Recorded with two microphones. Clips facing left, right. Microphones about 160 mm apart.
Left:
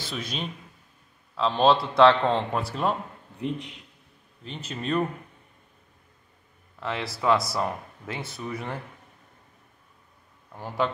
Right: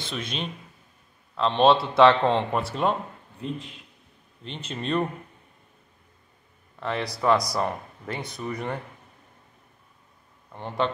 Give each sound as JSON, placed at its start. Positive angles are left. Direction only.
{"t": 0.1, "sound": "speech", "side_deg": 0}
{"t": 3.3, "sound": "a man's voice", "side_deg": 20}
{"t": 4.5, "sound": "speech", "side_deg": 5}
{"t": 6.8, "sound": "speech", "side_deg": 5}
{"t": 10.5, "sound": "speech", "side_deg": 5}